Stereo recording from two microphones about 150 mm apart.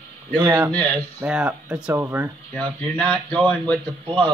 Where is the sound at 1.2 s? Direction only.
5° right (ahead or behind).